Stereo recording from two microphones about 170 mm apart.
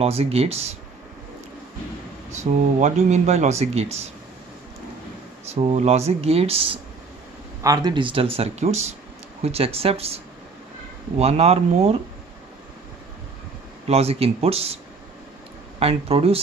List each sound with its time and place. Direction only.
0.0 s speech: 35° right (ahead or behind)
2.3 s speech: 45° right (ahead or behind)
5.5 s speech: 40° right (ahead or behind)
7.6 s speech: 25° right (ahead or behind)
13.8 s speech: 35° right (ahead or behind)
15.8 s speech: 35° right (ahead or behind)